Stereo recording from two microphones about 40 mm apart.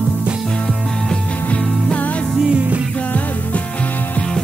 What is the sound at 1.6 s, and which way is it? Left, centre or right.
Music, centre.